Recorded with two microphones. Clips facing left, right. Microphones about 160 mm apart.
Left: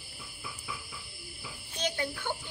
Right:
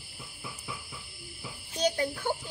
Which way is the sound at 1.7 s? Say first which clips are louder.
Right 5 dB; 35° right (ahead or behind).